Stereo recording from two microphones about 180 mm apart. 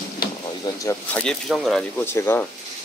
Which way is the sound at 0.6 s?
20° left (ahead or behind).